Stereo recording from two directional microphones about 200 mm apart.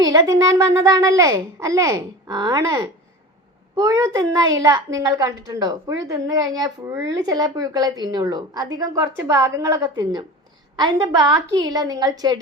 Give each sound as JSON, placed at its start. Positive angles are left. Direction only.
{"t": 0.0, "sound": "a child's voice", "side_deg": -20}